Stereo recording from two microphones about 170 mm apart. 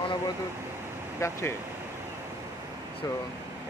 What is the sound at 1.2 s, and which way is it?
Speech, 15° left (ahead or behind).